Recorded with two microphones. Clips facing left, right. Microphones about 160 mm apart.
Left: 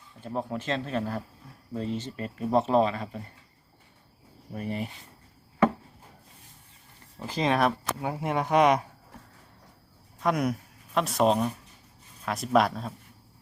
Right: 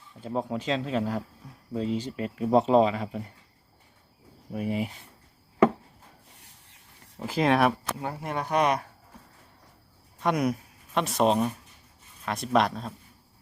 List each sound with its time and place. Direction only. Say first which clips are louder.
0.3 s speech: right 2 dB; 10° right (ahead or behind)
4.5 s speech: right 3 dB; 10° right (ahead or behind)
6.3 s rub: left 1 dB; 80° right
7.2 s a man's voice: right 2 dB; 5° right (ahead or behind)
8.0 s speech: left 4 dB; 20° left (ahead or behind)
10.2 s a man's voice: right 1 dB; centre (ahead or behind)